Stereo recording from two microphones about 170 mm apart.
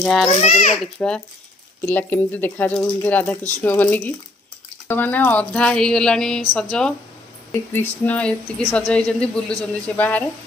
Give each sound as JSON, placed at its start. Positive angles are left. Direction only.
{"t": 0.0, "sound": "speech", "side_deg": 5}
{"t": 0.3, "sound": "a child's voice", "side_deg": 40}
{"t": 0.9, "sound": "a woman's voice", "side_deg": 5}
{"t": 7.7, "sound": "a woman's voice", "side_deg": 10}